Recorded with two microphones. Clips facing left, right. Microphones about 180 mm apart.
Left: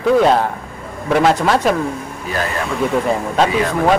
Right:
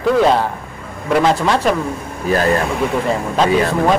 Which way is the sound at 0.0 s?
Centre (ahead or behind).